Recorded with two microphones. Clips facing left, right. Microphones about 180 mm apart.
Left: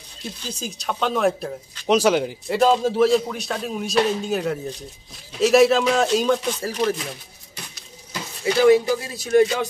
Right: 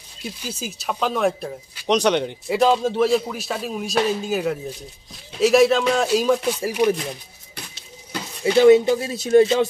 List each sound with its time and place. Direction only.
0.4 s speech: 5° right (ahead or behind)
8.5 s speech: 25° right (ahead or behind)